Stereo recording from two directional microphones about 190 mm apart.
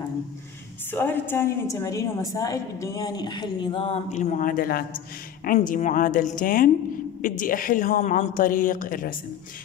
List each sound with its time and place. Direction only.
0.9 s a woman's voice: 10° left (ahead or behind); by 9.1 s 45° left (ahead or behind)